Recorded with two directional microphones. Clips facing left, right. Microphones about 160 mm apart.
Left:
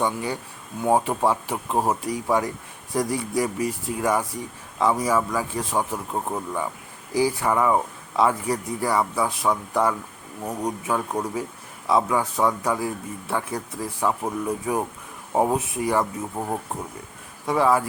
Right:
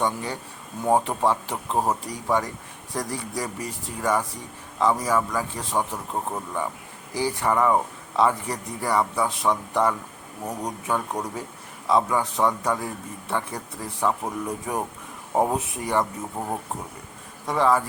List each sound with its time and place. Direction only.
0.0 s a man's voice: 10° left (ahead or behind)
17.4 s speech: 5° left (ahead or behind)